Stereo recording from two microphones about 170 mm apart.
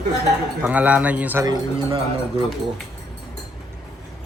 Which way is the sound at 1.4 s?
25° right (ahead or behind).